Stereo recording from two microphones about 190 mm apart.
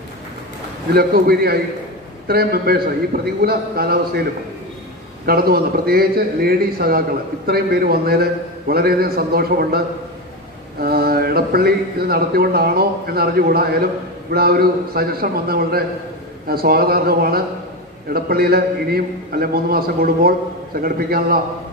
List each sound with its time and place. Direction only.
0.9 s speech: 55° right (ahead or behind)
5.2 s speech: 55° right (ahead or behind)